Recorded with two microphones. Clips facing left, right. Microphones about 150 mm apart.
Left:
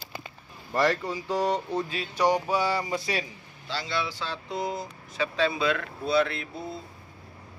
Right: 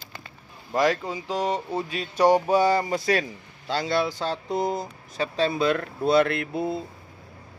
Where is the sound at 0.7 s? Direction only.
15° right (ahead or behind).